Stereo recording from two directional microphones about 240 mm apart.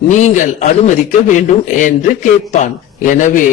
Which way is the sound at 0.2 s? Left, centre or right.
Left.